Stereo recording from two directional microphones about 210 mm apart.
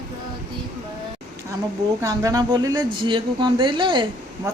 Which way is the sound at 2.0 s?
15° right (ahead or behind).